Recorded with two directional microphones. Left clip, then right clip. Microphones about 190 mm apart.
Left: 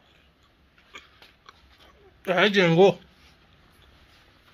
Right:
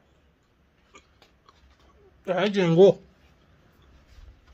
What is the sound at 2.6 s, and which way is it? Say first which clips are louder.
Speech: right 3 dB; 20° right (ahead or behind).